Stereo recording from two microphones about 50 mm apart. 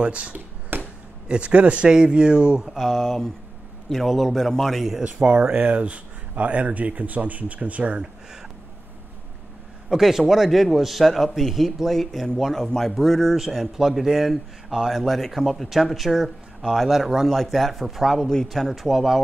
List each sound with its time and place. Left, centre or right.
0.0 s speech: right
0.7 s a sound: right
1.3 s a man's voice: right; by 5.0 s centre
5.0 s speech: centre
9.8 s a man's voice: centre
13.4 s a man's voice: centre
18.8 s a man's voice: centre